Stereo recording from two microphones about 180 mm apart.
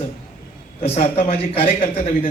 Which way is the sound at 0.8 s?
35° left (ahead or behind).